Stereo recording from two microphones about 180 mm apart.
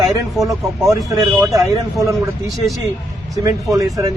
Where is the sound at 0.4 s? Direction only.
Centre (ahead or behind).